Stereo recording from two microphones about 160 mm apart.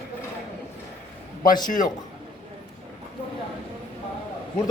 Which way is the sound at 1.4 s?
55° left (ahead or behind).